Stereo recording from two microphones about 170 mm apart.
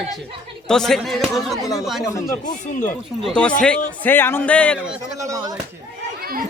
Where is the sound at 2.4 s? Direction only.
50° left (ahead or behind).